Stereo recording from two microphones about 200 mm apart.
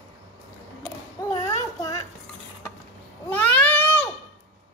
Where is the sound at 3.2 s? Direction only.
10° left (ahead or behind).